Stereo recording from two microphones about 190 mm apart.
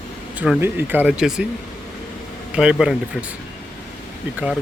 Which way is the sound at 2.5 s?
5° right (ahead or behind).